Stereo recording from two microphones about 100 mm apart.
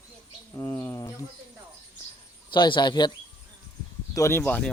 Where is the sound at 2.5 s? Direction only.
50° left (ahead or behind).